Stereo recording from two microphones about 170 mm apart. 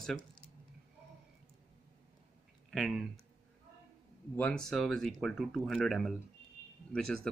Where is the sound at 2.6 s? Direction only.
Centre (ahead or behind).